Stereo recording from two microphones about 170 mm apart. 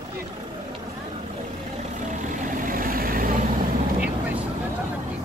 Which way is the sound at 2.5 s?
55° right (ahead or behind).